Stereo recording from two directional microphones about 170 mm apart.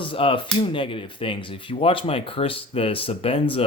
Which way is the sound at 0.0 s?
30° left (ahead or behind).